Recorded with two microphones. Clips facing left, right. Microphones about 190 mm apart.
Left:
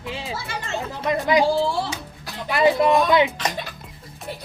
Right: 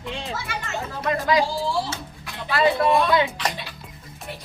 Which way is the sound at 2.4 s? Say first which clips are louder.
Left 2 dB; 20° left (ahead or behind).